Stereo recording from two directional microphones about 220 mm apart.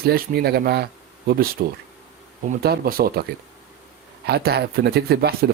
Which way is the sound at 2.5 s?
45° right (ahead or behind).